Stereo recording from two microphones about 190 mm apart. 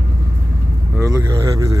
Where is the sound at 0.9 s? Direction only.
15° right (ahead or behind).